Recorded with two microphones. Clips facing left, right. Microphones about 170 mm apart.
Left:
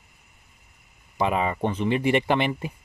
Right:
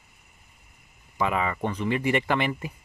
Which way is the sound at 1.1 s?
20° left (ahead or behind).